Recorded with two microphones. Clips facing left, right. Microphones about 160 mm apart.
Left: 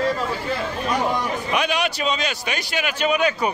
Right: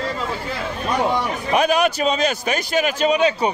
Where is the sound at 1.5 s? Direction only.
40° right (ahead or behind).